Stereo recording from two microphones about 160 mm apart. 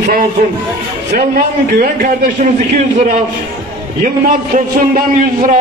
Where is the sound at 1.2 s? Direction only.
60° right (ahead or behind).